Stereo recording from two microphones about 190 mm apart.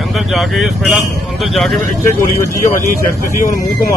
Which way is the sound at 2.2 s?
15° left (ahead or behind).